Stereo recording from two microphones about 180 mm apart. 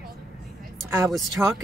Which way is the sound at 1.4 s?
10° right (ahead or behind).